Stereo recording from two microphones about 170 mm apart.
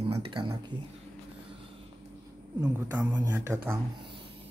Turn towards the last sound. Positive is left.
turn(degrees=-15)  # may be behind; listen again after turning